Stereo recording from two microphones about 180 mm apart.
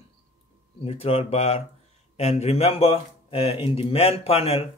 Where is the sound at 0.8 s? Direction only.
35° left (ahead or behind).